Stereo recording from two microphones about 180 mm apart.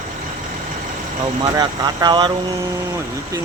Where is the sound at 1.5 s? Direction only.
20° right (ahead or behind).